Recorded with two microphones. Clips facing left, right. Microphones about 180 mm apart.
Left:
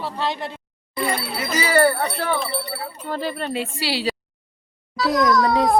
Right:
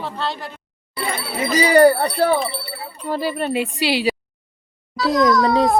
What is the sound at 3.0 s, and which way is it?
Speech, 10° right (ahead or behind).